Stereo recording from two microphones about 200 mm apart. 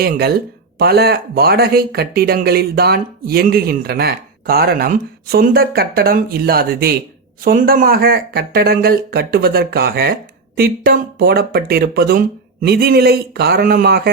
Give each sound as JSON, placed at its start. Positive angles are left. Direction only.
{"t": 0.0, "sound": "speech", "side_deg": -50}